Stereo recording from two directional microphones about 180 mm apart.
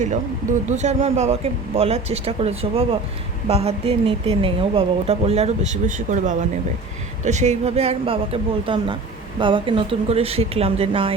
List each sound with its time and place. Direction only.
0.7 s speech: 40° right (ahead or behind)